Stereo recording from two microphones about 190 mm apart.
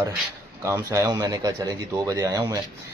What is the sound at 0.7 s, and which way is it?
Speech, 15° right (ahead or behind).